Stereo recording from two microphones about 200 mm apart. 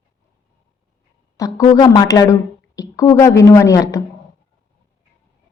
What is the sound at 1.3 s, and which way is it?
A woman's voice, 15° left (ahead or behind).